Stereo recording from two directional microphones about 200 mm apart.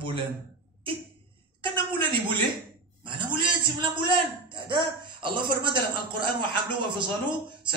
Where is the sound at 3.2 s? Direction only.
25° right (ahead or behind).